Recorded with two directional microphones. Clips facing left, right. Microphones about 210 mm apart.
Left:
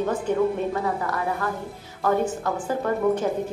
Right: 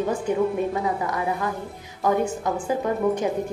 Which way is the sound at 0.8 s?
15° right (ahead or behind).